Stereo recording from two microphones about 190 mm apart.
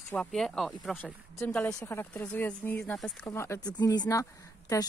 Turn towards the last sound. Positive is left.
turn(degrees=15)  # may be behind; listen again after turning